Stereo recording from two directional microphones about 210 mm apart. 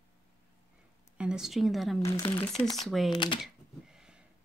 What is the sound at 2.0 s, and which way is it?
Speech, 15° left (ahead or behind).